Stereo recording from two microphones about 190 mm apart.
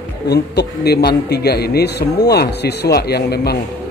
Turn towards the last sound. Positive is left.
turn(degrees=55)  # may be behind; listen again after turning